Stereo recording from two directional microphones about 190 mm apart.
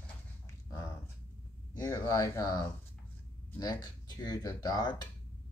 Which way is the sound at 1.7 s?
20° left (ahead or behind).